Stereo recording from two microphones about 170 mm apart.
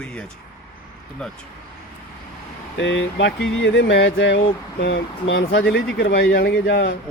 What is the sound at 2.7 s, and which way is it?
Speech, 90° left.